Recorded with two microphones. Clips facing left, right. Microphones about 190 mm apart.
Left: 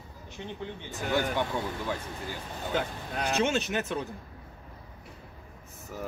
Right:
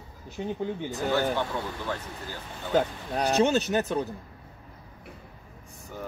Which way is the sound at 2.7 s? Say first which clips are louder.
Right 7 dB; 40° right (ahead or behind).